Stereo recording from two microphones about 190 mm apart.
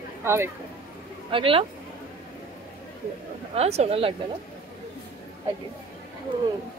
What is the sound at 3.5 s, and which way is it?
Speech, 35° right (ahead or behind).